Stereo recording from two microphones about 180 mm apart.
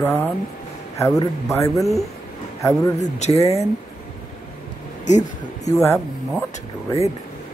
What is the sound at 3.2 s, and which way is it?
Speech, 40° left (ahead or behind).